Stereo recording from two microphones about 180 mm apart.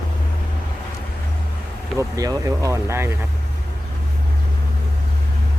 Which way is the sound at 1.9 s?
20° right (ahead or behind).